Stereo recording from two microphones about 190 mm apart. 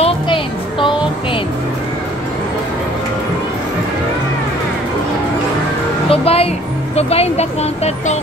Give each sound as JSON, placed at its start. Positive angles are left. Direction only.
{"t": 0.0, "sound": "music", "side_deg": 25}
{"t": 6.0, "sound": "music", "side_deg": 30}
{"t": 7.0, "sound": "a sound", "side_deg": 35}